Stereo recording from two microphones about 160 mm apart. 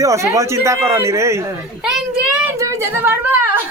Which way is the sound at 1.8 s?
5° right (ahead or behind).